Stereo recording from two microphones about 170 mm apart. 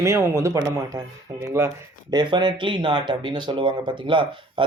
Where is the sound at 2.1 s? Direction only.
25° right (ahead or behind).